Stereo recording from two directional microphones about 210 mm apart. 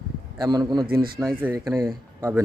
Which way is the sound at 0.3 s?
20° right (ahead or behind).